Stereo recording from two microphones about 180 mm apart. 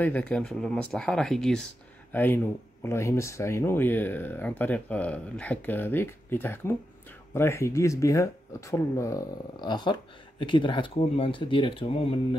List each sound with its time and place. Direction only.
0.0 s speech: 5° left (ahead or behind); by 12.4 s 35° left (ahead or behind)